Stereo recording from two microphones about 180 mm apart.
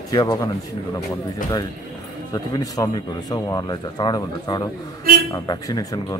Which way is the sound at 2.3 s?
20° left (ahead or behind).